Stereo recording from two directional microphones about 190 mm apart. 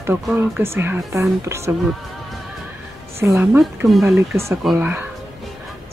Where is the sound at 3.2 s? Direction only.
10° right (ahead or behind).